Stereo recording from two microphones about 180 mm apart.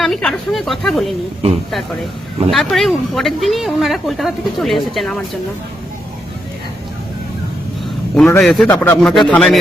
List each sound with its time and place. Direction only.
0.0 s speech: 5° left (ahead or behind)
2.5 s speech: centre (ahead or behind)
8.1 s speech: 5° left (ahead or behind)
8.7 s speech: 15° left (ahead or behind)
9.0 s speech: centre (ahead or behind)